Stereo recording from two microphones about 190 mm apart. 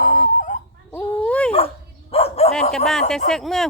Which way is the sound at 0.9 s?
5° left (ahead or behind).